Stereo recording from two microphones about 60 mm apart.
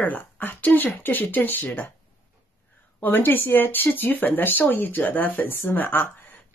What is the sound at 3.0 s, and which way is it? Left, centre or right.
Speech, left.